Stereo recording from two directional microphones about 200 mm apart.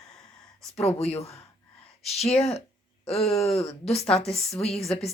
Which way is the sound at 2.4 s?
30° left (ahead or behind).